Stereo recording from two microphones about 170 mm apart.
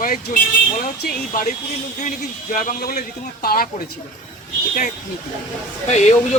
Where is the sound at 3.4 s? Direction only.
60° left (ahead or behind).